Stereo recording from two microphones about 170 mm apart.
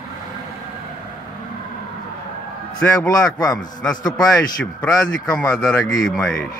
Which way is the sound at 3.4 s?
20° left (ahead or behind).